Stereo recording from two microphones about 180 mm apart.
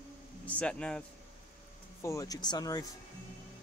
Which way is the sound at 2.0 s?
20° left (ahead or behind).